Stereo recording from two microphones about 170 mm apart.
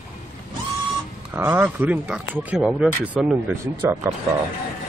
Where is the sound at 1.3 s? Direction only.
10° right (ahead or behind).